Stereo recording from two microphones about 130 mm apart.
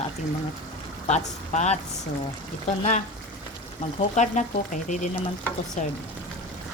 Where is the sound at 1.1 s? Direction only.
60° left (ahead or behind).